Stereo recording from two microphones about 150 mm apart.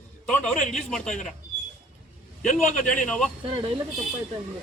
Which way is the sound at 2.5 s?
55° left (ahead or behind).